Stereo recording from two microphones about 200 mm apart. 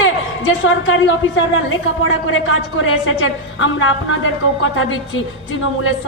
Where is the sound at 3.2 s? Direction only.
80° left.